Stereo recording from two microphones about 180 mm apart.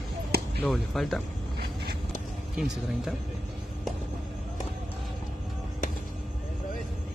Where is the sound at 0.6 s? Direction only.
Centre (ahead or behind).